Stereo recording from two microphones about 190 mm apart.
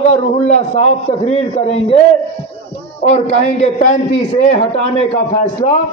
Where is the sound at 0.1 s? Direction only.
35° left (ahead or behind).